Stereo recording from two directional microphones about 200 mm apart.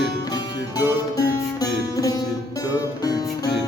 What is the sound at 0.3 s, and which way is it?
Music, 20° left (ahead or behind).